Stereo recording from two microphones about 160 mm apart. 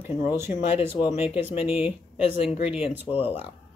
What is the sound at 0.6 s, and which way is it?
Speech, 40° left (ahead or behind).